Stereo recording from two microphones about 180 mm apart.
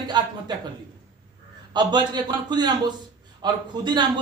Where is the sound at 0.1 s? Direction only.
25° right (ahead or behind).